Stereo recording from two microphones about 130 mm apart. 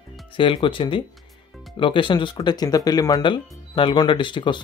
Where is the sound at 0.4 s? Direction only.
40° left (ahead or behind).